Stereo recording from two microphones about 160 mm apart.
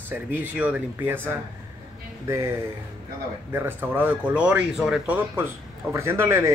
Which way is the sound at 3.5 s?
15° right (ahead or behind).